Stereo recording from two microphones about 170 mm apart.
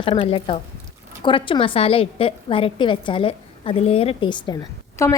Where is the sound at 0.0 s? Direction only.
35° left (ahead or behind).